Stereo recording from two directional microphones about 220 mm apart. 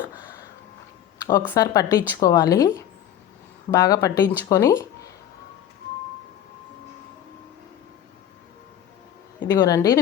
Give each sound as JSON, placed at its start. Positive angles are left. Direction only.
{"t": 0.0, "sound": "a sound", "side_deg": -5}
{"t": 1.2, "sound": "speech", "side_deg": 15}
{"t": 9.4, "sound": "speech", "side_deg": 15}